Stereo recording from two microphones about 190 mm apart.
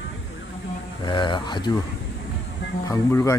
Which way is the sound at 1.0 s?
25° left (ahead or behind).